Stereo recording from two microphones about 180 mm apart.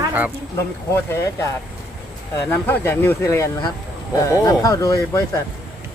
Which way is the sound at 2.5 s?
10° left (ahead or behind).